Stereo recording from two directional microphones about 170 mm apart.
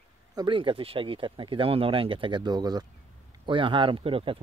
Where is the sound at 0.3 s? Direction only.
25° right (ahead or behind).